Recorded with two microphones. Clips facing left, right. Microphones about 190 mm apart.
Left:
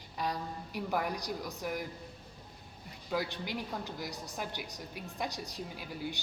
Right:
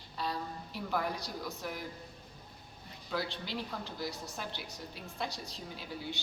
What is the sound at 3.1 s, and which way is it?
A woman's voice, 15° left (ahead or behind).